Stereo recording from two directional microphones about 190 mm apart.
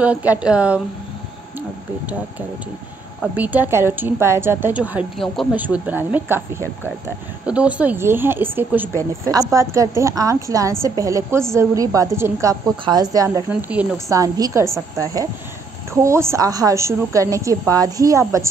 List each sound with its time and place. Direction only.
0.0 s speech: 5° right (ahead or behind)
3.3 s speech: 10° right (ahead or behind)
13.5 s speech: 5° right (ahead or behind)
15.9 s speech: 15° right (ahead or behind)